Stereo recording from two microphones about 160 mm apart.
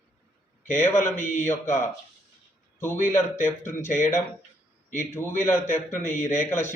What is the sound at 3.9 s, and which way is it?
Speech, 50° left (ahead or behind).